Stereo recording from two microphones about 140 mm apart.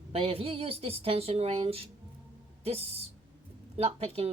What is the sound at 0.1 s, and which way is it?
Speech, 45° right (ahead or behind).